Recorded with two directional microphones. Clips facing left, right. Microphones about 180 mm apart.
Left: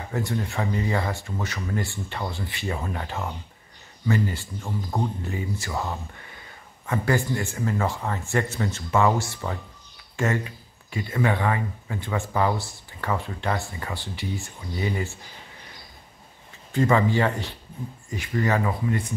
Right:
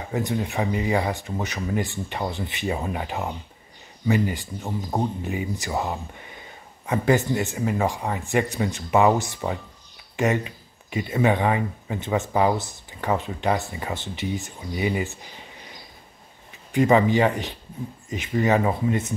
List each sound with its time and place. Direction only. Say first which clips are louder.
0.1 s speech: right 3 dB; 15° right (ahead or behind)
16.7 s speech: right 3 dB; 20° right (ahead or behind)